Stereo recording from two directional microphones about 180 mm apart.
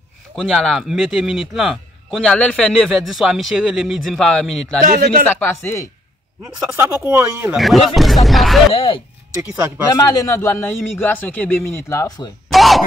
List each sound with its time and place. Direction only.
0.4 s a man's voice: centre (ahead or behind)
5.4 s a man's voice: 15° left (ahead or behind)
6.4 s speech: 15° right (ahead or behind)
7.5 s a man's voice: centre (ahead or behind)
8.7 s a man's voice: 30° left (ahead or behind)
12.4 s a sound: centre (ahead or behind)